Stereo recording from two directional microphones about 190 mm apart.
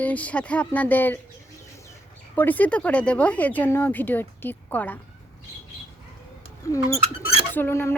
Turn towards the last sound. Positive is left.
turn(degrees=10)  # may be behind; listen again after turning